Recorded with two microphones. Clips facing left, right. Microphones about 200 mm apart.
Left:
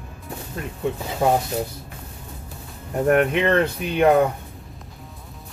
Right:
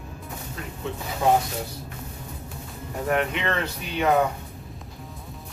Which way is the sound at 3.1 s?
55° left (ahead or behind).